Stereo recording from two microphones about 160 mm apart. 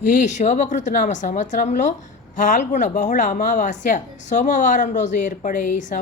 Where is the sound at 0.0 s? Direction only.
50° left (ahead or behind).